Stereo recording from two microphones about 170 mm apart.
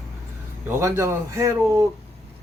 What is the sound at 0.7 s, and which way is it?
Speech, 15° right (ahead or behind).